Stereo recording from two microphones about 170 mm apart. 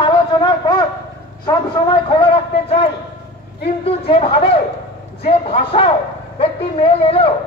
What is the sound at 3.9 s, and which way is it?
A man's voice, 35° left (ahead or behind).